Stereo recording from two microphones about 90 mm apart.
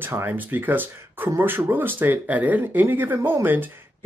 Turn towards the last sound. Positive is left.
turn(degrees=-20)  # may be behind; listen again after turning